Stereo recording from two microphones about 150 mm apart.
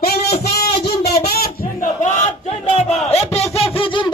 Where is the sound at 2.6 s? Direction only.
45° left (ahead or behind).